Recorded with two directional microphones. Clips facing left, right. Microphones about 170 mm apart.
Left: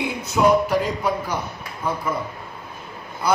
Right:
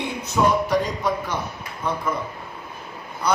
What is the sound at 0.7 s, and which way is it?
Speech, 5° left (ahead or behind).